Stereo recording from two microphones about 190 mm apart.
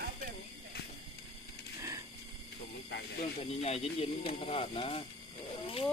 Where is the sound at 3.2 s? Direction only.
30° left (ahead or behind).